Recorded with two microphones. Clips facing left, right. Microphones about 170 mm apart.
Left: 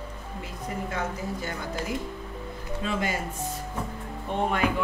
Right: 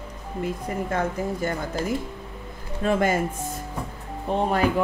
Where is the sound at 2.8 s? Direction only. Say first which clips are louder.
Right 8 dB; 50° right (ahead or behind).